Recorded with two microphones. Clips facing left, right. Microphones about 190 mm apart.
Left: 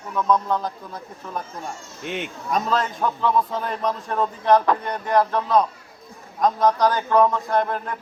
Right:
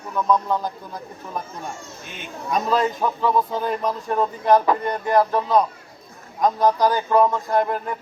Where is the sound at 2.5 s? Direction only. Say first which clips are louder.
Right 3 dB; 5° right (ahead or behind).